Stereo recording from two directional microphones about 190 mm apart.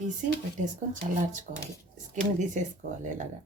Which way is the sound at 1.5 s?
40° right (ahead or behind).